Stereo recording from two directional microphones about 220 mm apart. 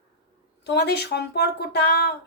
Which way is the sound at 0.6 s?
50° left (ahead or behind).